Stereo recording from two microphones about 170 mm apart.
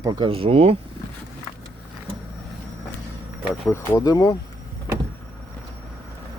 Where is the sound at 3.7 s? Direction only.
20° left (ahead or behind).